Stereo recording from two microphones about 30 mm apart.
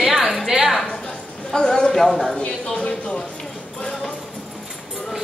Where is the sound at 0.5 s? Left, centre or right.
Right.